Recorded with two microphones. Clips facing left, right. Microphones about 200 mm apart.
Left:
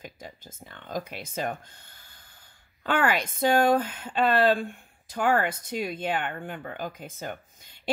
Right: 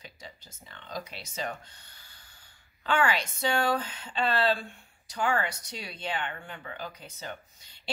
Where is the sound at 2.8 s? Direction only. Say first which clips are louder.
Left 2 dB; 50° left (ahead or behind).